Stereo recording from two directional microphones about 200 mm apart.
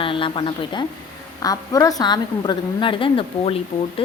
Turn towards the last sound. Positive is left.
turn(degrees=25)  # may be behind; listen again after turning